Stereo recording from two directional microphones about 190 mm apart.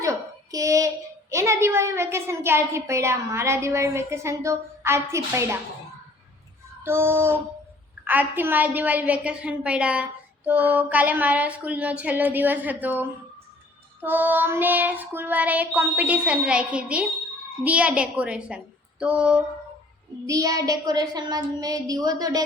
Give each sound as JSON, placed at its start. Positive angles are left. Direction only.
{"t": 0.0, "sound": "a child's voice", "side_deg": -15}
{"t": 6.8, "sound": "a woman's voice", "side_deg": -10}
{"t": 20.2, "sound": "speech", "side_deg": -20}